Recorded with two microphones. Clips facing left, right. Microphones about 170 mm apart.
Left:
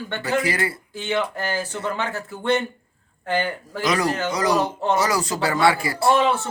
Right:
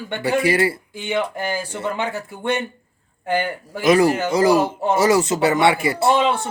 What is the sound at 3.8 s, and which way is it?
Speech, 25° right (ahead or behind).